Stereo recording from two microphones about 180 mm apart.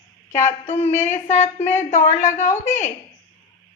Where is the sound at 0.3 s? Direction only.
40° left (ahead or behind).